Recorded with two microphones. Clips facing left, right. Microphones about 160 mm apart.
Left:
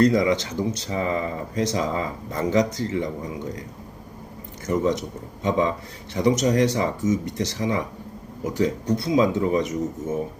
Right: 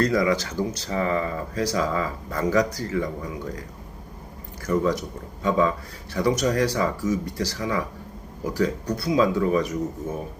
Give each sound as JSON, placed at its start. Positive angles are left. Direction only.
{"t": 0.0, "sound": "speech", "side_deg": 20}
{"t": 4.6, "sound": "speech", "side_deg": 20}